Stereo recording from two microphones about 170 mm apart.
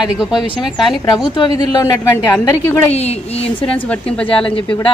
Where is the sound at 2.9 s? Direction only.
40° left (ahead or behind).